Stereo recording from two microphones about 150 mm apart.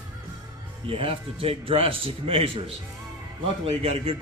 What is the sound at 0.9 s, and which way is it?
A man's voice, 35° right (ahead or behind).